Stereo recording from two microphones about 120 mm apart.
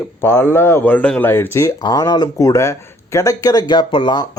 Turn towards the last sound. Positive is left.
turn(degrees=40)  # may be behind; listen again after turning